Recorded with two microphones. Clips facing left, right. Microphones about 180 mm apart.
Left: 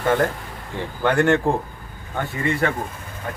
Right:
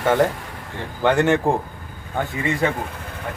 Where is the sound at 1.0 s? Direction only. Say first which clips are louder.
Right 1 dB; 20° right (ahead or behind).